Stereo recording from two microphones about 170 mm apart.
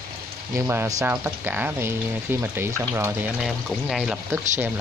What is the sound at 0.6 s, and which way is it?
Speech, 15° right (ahead or behind).